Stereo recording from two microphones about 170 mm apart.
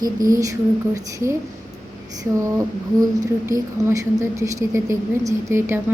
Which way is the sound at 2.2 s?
20° right (ahead or behind).